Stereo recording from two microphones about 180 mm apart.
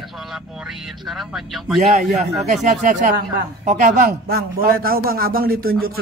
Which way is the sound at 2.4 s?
40° right (ahead or behind).